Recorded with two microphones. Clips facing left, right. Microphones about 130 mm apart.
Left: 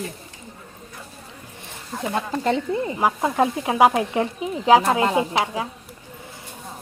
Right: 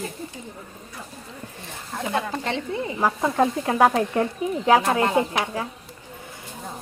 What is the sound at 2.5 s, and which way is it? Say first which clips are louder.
Speech: left 8 dB; 40° left (ahead or behind).